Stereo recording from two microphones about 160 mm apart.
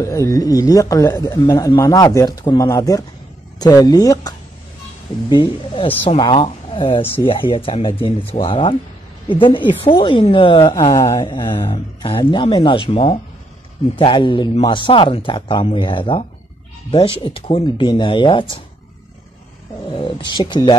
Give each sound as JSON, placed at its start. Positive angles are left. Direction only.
{"t": 0.0, "sound": "a woman's voice", "side_deg": 20}
{"t": 19.9, "sound": "speech", "side_deg": 30}